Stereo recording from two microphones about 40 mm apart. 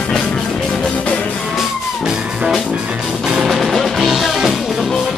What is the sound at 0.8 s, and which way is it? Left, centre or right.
Music, left.